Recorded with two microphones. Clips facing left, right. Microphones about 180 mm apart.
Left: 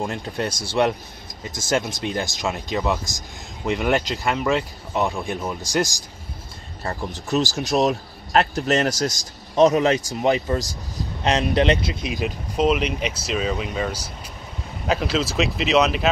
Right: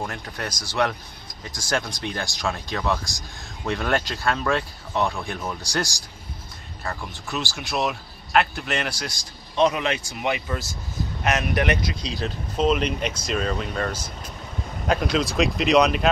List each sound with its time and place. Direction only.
0.0 s speech: 25° left (ahead or behind)
6.8 s speech: 35° left (ahead or behind); by 16.1 s centre (ahead or behind)